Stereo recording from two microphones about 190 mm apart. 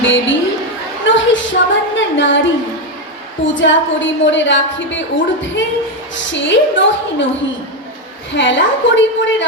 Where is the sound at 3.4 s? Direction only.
80° left.